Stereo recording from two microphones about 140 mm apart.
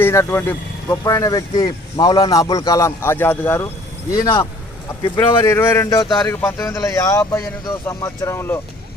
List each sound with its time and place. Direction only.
0.0 s speech: 20° left (ahead or behind)
4.1 s speech: 30° left (ahead or behind)
5.5 s speech: 20° left (ahead or behind)